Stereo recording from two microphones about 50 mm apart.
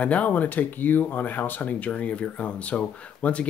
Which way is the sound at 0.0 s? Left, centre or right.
Left.